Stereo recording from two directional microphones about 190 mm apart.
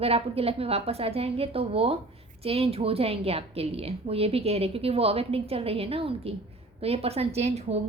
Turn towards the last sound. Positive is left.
turn(degrees=-35)  # may be behind; listen again after turning